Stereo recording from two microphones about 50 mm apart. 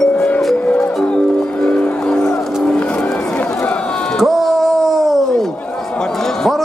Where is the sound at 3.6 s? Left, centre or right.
Left.